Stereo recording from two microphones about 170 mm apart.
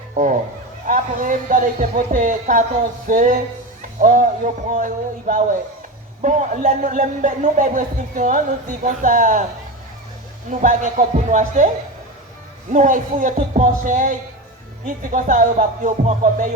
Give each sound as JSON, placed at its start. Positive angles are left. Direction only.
{"t": 0.1, "sound": "a man's voice", "side_deg": -45}
{"t": 10.5, "sound": "a man's voice", "side_deg": -50}
{"t": 12.7, "sound": "a man's voice", "side_deg": -50}